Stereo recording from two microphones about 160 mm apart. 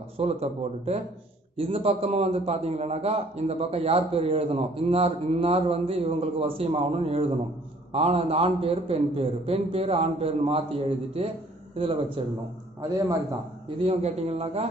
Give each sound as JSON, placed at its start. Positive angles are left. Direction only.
{"t": 0.2, "sound": "a man's voice", "side_deg": -40}
{"t": 13.7, "sound": "a man's voice", "side_deg": -40}